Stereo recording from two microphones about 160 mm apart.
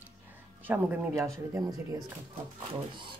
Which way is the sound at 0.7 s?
10° right (ahead or behind).